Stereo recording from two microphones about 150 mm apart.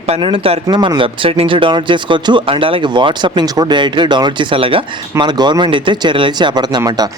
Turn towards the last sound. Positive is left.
turn(degrees=-25)  # may be behind; listen again after turning